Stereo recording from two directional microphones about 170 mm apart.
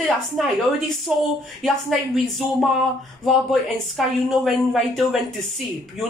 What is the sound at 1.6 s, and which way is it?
A woman's voice, centre (ahead or behind).